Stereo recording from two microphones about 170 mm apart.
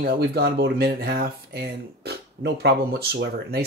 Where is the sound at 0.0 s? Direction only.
60° right (ahead or behind).